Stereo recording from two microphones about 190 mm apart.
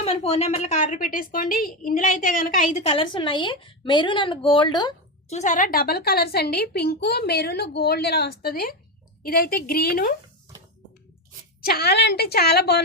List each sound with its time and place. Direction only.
0.0 s a woman's voice: 30° left (ahead or behind)
2.8 s a woman's voice: 25° left (ahead or behind)
5.3 s a woman's voice: 40° left (ahead or behind)
11.6 s a woman's voice: 55° left (ahead or behind)